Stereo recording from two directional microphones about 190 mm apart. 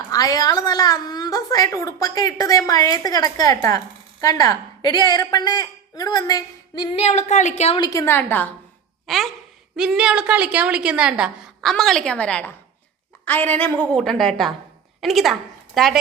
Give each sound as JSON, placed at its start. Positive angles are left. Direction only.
{"t": 0.1, "sound": "a woman's voice", "side_deg": 20}
{"t": 6.9, "sound": "a woman's voice", "side_deg": 35}
{"t": 7.8, "sound": "a woman's voice", "side_deg": 15}
{"t": 9.0, "sound": "a sound", "side_deg": 0}
{"t": 9.7, "sound": "a woman's voice", "side_deg": -5}